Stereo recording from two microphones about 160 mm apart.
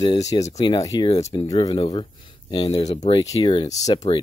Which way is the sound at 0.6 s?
25° left (ahead or behind).